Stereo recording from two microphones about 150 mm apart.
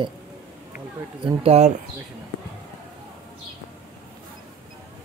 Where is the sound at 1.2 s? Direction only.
40° right (ahead or behind).